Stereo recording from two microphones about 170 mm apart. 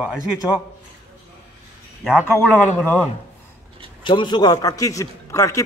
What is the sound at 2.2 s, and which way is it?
Speech, 10° left (ahead or behind).